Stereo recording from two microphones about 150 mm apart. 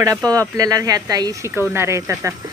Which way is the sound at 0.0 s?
25° right (ahead or behind).